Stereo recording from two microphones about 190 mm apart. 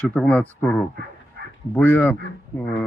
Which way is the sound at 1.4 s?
60° right (ahead or behind).